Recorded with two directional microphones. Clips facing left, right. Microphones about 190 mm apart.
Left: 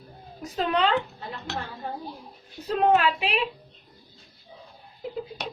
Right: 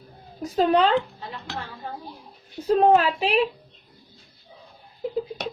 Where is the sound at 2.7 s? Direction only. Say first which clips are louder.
Right 3 dB; 35° right (ahead or behind).